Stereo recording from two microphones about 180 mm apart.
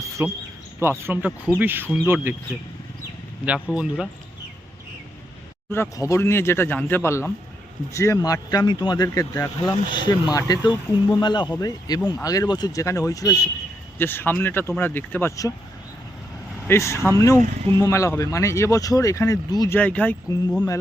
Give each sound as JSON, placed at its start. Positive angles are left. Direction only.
{"t": 0.2, "sound": "speech", "side_deg": -15}
{"t": 3.4, "sound": "speech", "side_deg": -5}
{"t": 5.7, "sound": "speech", "side_deg": 15}
{"t": 16.6, "sound": "speech", "side_deg": 15}